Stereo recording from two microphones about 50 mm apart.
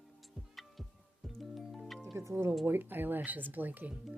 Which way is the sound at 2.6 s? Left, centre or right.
Right.